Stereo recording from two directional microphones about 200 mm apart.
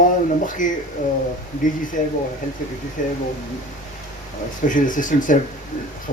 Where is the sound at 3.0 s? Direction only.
40° left (ahead or behind).